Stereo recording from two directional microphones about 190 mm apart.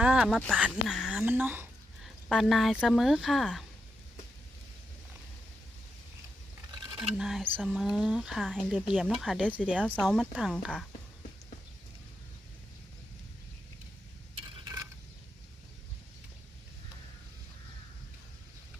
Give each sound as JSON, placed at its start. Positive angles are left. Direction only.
{"t": 0.0, "sound": "speech", "side_deg": -5}
{"t": 6.7, "sound": "a sound", "side_deg": -25}
{"t": 7.2, "sound": "speech", "side_deg": 0}